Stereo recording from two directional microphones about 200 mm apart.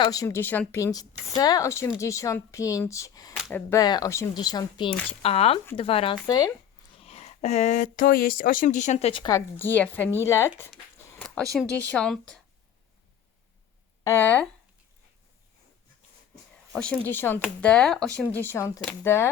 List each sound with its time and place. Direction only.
0.0 s speech: 15° left (ahead or behind)
6.2 s speech: 15° left (ahead or behind)
7.0 s speech: 30° left (ahead or behind)
9.6 s speech: 10° left (ahead or behind)
11.5 s speech: centre (ahead or behind)
14.0 s speech: 10° left (ahead or behind)
16.7 s speech: 5° left (ahead or behind)